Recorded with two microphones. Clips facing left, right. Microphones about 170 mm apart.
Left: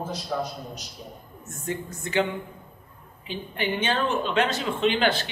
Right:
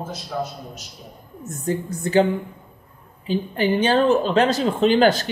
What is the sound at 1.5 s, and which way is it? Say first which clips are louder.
Speech: right 7 dB; 35° right (ahead or behind).